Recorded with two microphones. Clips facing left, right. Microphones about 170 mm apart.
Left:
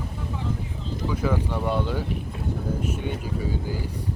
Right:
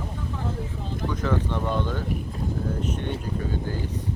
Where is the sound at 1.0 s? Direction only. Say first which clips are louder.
Left 1 dB; 10° left (ahead or behind).